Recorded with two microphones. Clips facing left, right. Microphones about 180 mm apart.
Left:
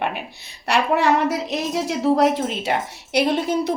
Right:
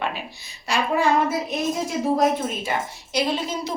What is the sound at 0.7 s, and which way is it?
A woman's voice, 70° left (ahead or behind).